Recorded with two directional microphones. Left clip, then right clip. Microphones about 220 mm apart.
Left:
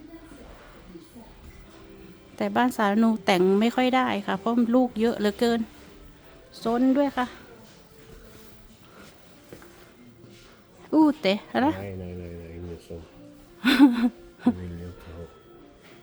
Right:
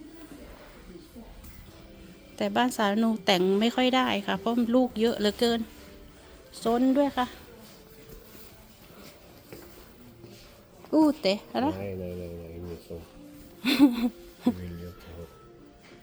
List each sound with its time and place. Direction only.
2.3 s a woman's voice: 20° left (ahead or behind)
10.9 s speech: 25° left (ahead or behind)
13.6 s hoot: 30° left (ahead or behind)